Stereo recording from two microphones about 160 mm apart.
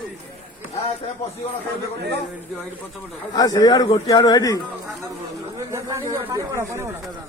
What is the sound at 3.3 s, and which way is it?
A man's voice, 25° left (ahead or behind).